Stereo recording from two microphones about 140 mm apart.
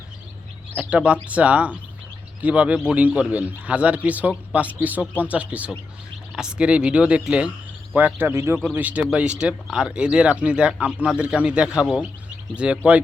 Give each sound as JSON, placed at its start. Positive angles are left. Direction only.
{"t": 0.8, "sound": "speech", "side_deg": -10}